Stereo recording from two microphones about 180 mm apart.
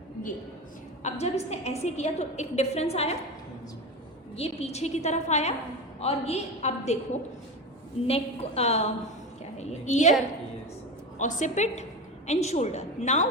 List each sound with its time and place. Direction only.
1.2 s a woman's voice: 35° left (ahead or behind)
4.4 s a woman's voice: 35° left (ahead or behind)
8.0 s a woman's voice: 35° left (ahead or behind)
11.2 s a woman's voice: 45° left (ahead or behind)